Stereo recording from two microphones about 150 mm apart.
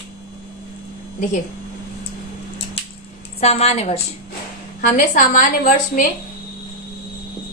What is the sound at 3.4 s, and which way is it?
Speech, 45° left (ahead or behind).